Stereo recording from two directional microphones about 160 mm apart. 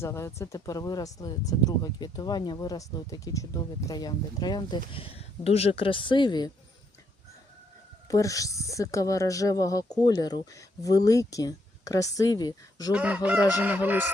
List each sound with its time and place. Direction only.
0.0 s speech: 15° left (ahead or behind)
8.0 s speech: 20° left (ahead or behind)
12.9 s speech: 10° right (ahead or behind)